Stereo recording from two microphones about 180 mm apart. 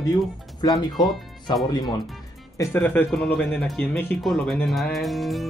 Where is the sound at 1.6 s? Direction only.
20° left (ahead or behind).